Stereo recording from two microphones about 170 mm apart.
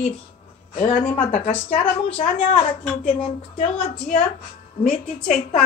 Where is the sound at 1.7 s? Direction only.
35° left (ahead or behind).